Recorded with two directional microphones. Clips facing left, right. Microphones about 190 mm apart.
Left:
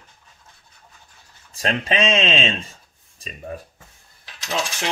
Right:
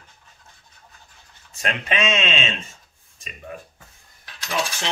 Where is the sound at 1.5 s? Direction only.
35° left (ahead or behind).